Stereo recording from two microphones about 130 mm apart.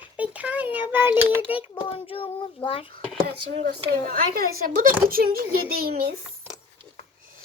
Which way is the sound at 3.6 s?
85° right.